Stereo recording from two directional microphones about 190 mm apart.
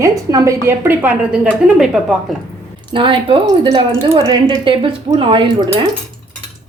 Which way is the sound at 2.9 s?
25° right (ahead or behind).